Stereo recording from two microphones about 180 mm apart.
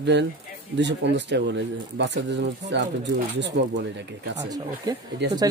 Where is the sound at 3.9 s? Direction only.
75° right (ahead or behind).